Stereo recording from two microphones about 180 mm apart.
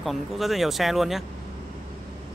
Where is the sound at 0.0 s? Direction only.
Centre (ahead or behind).